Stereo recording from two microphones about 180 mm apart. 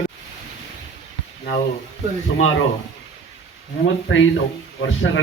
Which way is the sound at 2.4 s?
90° left.